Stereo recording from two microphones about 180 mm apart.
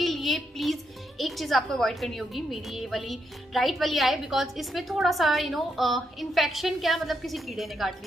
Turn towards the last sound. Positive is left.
turn(degrees=0)  # may be behind; listen again after turning